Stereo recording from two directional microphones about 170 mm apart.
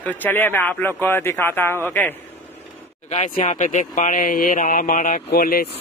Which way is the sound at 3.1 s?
40° left (ahead or behind).